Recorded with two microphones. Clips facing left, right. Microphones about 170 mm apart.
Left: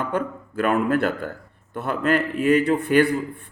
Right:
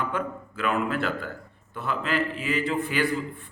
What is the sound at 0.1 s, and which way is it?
A man's voice, 45° left (ahead or behind).